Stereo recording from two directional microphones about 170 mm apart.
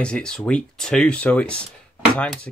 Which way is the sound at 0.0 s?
5° left (ahead or behind).